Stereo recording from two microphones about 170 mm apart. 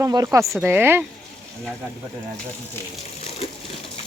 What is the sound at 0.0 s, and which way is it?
Speech, 20° right (ahead or behind).